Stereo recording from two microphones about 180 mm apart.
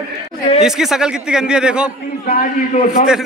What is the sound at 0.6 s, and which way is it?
Speech, centre (ahead or behind).